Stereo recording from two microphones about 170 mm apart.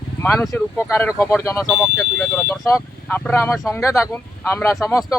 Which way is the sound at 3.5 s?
Centre (ahead or behind).